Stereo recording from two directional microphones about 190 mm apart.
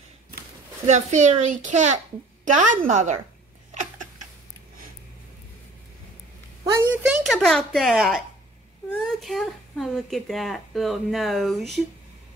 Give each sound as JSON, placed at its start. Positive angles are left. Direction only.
{"t": 0.8, "sound": "a child's voice", "side_deg": -40}
{"t": 6.6, "sound": "a sound", "side_deg": -15}
{"t": 8.9, "sound": "speech", "side_deg": 0}